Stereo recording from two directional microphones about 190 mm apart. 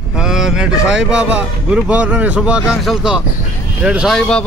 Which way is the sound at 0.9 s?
5° right (ahead or behind).